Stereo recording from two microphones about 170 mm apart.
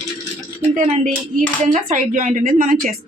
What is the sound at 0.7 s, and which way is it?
Speech, 50° right (ahead or behind).